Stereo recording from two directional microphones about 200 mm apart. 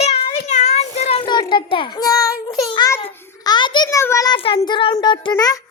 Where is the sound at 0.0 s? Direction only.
30° left (ahead or behind).